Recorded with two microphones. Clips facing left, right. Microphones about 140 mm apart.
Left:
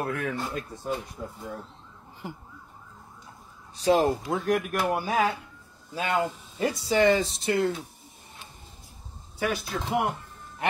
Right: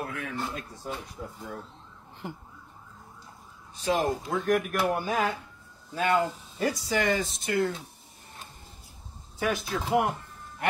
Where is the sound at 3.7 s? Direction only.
35° left (ahead or behind).